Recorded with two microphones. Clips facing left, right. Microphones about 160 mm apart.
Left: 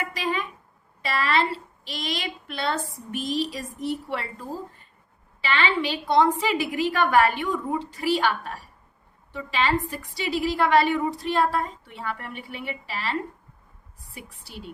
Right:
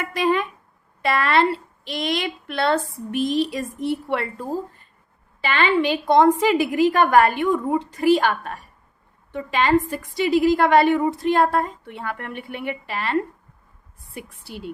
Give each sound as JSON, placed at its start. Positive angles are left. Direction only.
{"t": 0.1, "sound": "a woman's voice", "side_deg": -55}
{"t": 5.4, "sound": "a woman's voice", "side_deg": -50}